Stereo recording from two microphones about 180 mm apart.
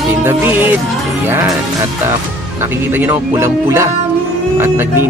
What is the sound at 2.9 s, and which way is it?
Speech, 10° right (ahead or behind).